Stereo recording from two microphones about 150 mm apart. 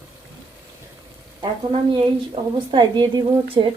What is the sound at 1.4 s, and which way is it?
A woman's voice, 35° right (ahead or behind).